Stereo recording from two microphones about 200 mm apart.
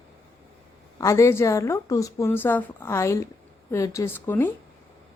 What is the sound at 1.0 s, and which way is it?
Speech, 15° left (ahead or behind).